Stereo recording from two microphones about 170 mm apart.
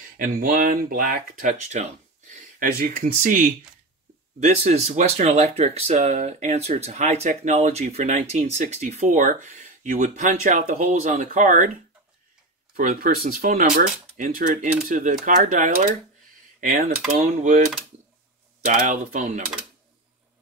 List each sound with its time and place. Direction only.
0.2 s speech: 60° right (ahead or behind)
12.7 s speech: 55° right (ahead or behind)
17.2 s speech: 45° right (ahead or behind)
18.7 s speech: 50° right (ahead or behind)